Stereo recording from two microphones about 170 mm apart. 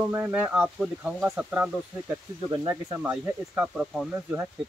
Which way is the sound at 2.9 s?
10° right (ahead or behind).